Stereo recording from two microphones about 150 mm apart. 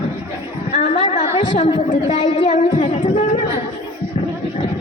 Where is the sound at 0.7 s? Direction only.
45° left (ahead or behind).